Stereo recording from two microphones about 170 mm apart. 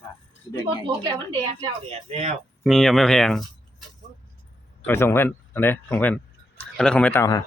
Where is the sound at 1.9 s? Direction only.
40° right (ahead or behind).